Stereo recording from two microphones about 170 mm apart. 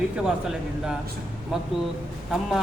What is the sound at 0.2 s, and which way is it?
Speech, 5° right (ahead or behind).